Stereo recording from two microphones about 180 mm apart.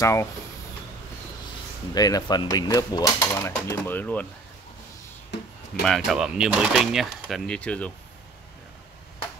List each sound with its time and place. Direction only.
0.0 s speech: 15° left (ahead or behind)
2.0 s speech: 20° left (ahead or behind)
5.9 s speech: centre (ahead or behind)